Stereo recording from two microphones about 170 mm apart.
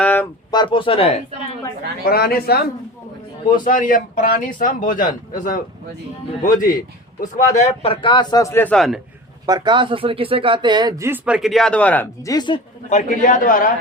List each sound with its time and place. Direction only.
0.0 s a sound: 10° left (ahead or behind)
0.5 s speech: 25° left (ahead or behind)
2.0 s speech: 60° left (ahead or behind)
3.5 s speech: 50° left (ahead or behind); by 9.0 s 5° left (ahead or behind)
9.5 s speech: 25° right (ahead or behind)
11.3 s speech: centre (ahead or behind)
12.3 s speech: 25° left (ahead or behind)
12.9 s speech: 45° left (ahead or behind)